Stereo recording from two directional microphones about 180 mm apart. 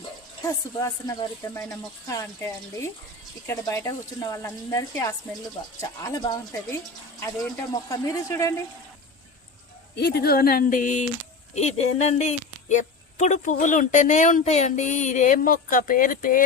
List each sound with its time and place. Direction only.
0.4 s speech: 20° left (ahead or behind)
9.9 s speech: 60° left (ahead or behind)